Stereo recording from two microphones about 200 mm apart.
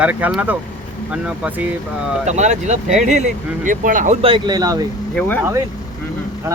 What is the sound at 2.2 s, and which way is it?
Speech, 35° right (ahead or behind).